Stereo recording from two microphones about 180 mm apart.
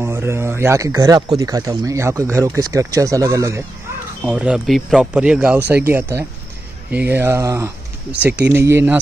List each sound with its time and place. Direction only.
0.0 s a man's voice: 15° right (ahead or behind)
4.2 s a man's voice: 5° right (ahead or behind)